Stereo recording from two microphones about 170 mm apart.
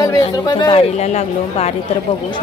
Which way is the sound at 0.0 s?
25° left (ahead or behind).